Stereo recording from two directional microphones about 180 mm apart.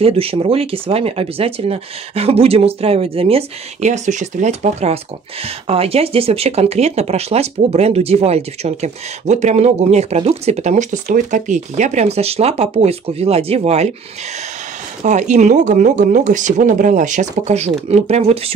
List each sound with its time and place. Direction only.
0.0 s speech: 30° right (ahead or behind)
15.0 s speech: 40° right (ahead or behind)